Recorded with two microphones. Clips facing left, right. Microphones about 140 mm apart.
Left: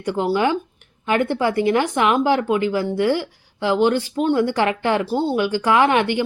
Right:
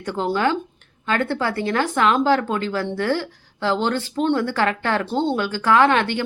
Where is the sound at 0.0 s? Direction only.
10° left (ahead or behind).